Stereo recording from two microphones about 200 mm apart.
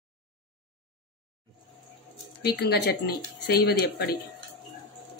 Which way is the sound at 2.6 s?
55° left (ahead or behind).